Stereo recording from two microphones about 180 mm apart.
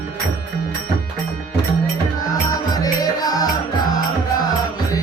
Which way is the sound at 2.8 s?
20° left (ahead or behind).